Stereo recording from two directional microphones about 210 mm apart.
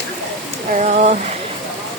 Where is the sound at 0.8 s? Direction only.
35° right (ahead or behind).